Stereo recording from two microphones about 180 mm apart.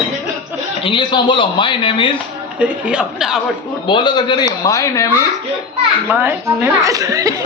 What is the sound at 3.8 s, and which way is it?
Speech, 25° left (ahead or behind).